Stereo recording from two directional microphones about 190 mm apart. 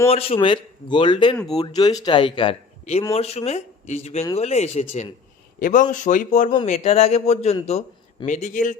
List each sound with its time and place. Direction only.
0.1 s a man's voice: 30° left (ahead or behind)